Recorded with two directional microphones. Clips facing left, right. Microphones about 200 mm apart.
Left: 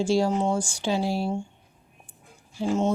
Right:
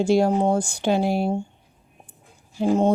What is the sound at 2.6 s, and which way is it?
Speech, 60° right (ahead or behind).